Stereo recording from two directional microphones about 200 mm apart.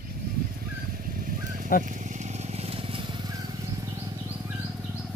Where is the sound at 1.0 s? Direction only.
45° right (ahead or behind).